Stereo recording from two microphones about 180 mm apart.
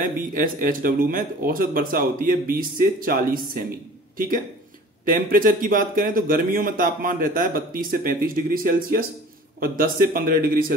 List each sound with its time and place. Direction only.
0.0 s speech: 50° right (ahead or behind)
5.0 s speech: 50° right (ahead or behind)